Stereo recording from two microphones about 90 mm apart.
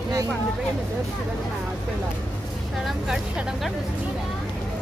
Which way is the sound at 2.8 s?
Centre (ahead or behind).